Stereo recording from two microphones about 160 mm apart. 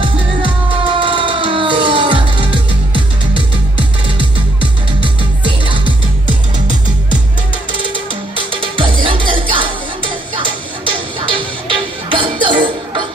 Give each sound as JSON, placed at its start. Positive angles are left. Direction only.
{"t": 0.0, "sound": "music", "side_deg": -30}
{"t": 8.5, "sound": "music", "side_deg": -30}